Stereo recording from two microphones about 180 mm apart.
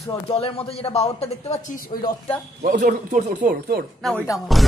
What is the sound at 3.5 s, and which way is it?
Speech, 60° right (ahead or behind).